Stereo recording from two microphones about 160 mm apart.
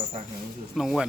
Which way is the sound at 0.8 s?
Centre (ahead or behind).